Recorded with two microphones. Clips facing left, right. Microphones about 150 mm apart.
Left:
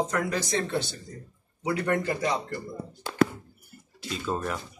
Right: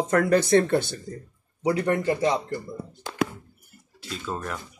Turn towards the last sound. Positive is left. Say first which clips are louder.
# left 2 dB
turn(degrees=5)  # may be behind; listen again after turning